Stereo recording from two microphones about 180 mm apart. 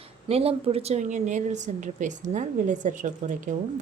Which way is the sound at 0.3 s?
35° right (ahead or behind).